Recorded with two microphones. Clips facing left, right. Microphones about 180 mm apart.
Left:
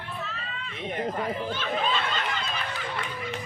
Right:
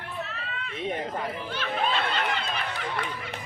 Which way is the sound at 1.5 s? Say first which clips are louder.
Even; 65° right (ahead or behind).